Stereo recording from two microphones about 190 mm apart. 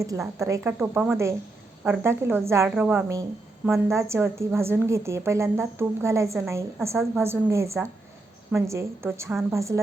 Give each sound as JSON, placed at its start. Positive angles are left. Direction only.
{"t": 0.0, "sound": "a woman's voice", "side_deg": -15}